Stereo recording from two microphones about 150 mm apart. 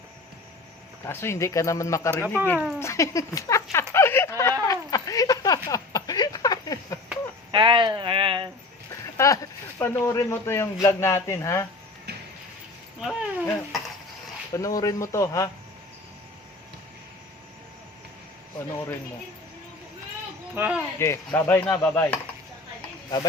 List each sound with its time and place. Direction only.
1.0 s speech: 15° left (ahead or behind)
3.9 s a sound: 15° left (ahead or behind)
7.5 s speech: 30° right (ahead or behind)
9.1 s speech: 20° left (ahead or behind)
12.1 s a sound: 90° right
13.0 s speech: centre (ahead or behind)
14.5 s speech: 25° left (ahead or behind)
20.6 s speech: 10° right (ahead or behind)
21.0 s speech: 15° left (ahead or behind)